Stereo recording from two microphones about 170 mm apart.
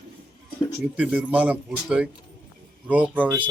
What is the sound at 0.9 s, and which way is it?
Speech, 10° right (ahead or behind).